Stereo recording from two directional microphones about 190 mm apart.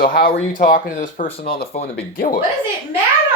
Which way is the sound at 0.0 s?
50° left (ahead or behind).